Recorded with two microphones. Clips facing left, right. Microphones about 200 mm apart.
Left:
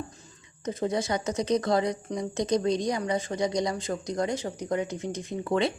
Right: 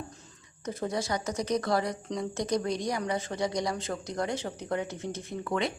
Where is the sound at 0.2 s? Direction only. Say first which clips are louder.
Left 2 dB; 20° left (ahead or behind).